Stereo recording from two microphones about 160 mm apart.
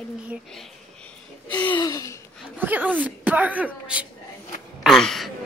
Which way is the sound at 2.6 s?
10° right (ahead or behind).